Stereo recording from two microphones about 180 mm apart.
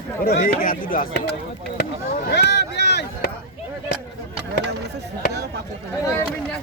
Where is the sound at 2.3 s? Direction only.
65° left (ahead or behind).